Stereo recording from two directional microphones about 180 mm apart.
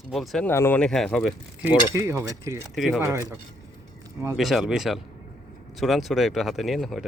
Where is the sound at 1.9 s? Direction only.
15° right (ahead or behind).